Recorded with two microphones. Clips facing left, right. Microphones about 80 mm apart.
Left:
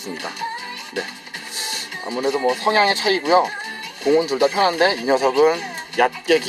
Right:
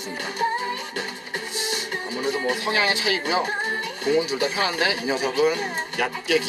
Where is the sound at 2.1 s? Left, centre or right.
Left.